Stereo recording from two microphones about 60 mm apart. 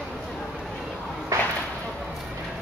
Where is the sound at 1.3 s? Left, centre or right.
Right.